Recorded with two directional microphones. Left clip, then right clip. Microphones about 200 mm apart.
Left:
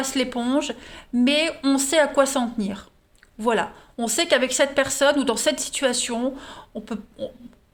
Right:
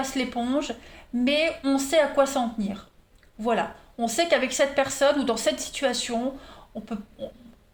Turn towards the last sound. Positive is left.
turn(degrees=50)  # may be behind; listen again after turning